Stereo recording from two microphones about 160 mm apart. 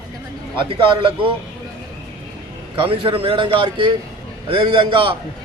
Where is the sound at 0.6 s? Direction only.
35° right (ahead or behind).